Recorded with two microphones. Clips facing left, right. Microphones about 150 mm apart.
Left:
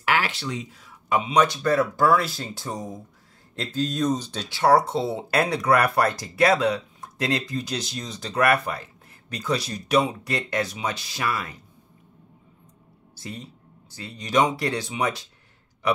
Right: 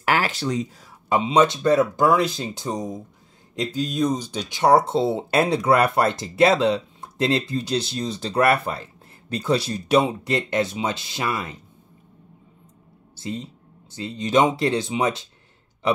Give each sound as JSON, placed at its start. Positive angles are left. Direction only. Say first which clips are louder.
{"t": 0.0, "sound": "speech", "louder": "right 3 dB", "side_deg": -40}
{"t": 13.2, "sound": "speech", "louder": "right 6 dB", "side_deg": -25}